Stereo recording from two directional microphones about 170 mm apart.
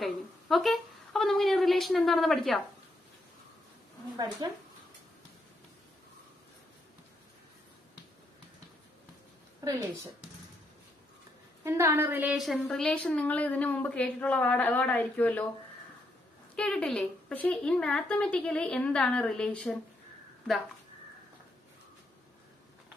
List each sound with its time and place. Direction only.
0.0 s a sound: centre (ahead or behind)
4.4 s speech: 25° right (ahead or behind)
9.7 s speech: 20° right (ahead or behind)
11.6 s a woman's voice: 15° right (ahead or behind)
12.4 s a woman's voice: centre (ahead or behind)
16.5 s a woman's voice: 5° left (ahead or behind)